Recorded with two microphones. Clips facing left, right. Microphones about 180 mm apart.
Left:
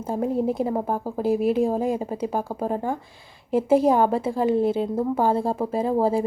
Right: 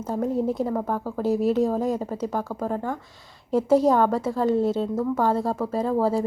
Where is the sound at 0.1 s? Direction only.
10° left (ahead or behind).